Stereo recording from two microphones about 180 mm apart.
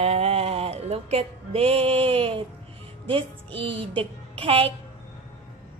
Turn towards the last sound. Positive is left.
turn(degrees=-30)  # may be behind; listen again after turning